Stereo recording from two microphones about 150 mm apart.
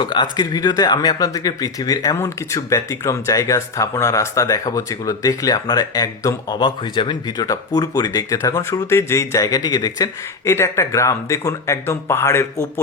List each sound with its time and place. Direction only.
0.0 s speech: 30° left (ahead or behind)